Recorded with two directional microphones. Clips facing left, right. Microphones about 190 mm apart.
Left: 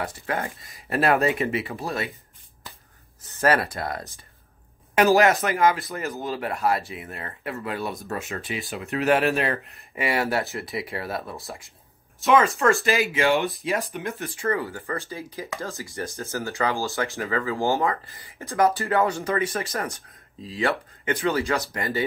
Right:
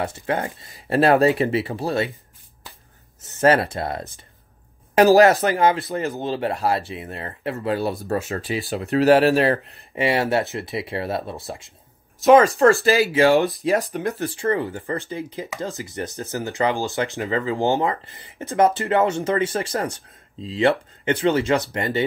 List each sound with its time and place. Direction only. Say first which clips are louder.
0.0 s speech: right 4 dB; 30° right (ahead or behind)
3.3 s speech: right 4 dB; 25° right (ahead or behind)
12.2 s speech: right 7 dB; 40° right (ahead or behind)